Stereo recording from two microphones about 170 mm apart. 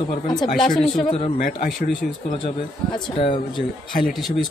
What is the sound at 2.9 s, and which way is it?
Speech, 30° left (ahead or behind).